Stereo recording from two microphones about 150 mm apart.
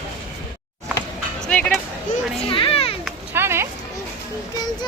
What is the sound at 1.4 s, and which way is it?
Music, 5° left (ahead or behind).